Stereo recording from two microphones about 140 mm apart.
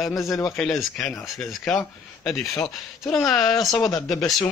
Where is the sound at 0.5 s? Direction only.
Centre (ahead or behind).